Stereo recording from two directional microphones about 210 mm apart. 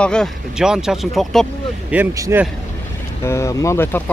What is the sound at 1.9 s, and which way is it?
Speech, 10° right (ahead or behind).